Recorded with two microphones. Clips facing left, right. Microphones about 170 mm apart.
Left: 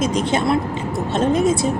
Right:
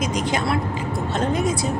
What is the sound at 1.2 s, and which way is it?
Speech, 25° left (ahead or behind).